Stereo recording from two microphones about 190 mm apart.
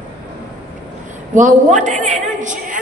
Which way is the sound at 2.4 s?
40° right (ahead or behind).